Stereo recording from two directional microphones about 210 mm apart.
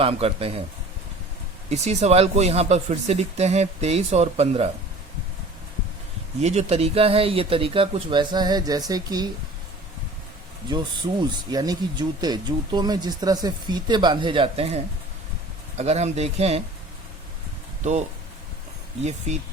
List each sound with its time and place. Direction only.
0.0 s speech: 25° right (ahead or behind)
1.7 s speech: 30° right (ahead or behind)
6.4 s speech: 30° right (ahead or behind)
10.7 s speech: 20° right (ahead or behind)
15.8 s speech: 30° right (ahead or behind)